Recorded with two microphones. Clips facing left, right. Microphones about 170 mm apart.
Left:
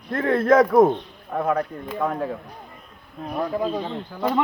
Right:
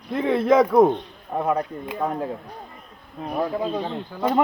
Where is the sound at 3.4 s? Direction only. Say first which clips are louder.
Even; centre (ahead or behind).